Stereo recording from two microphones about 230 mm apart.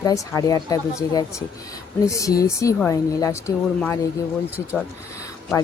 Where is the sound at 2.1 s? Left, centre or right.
Centre.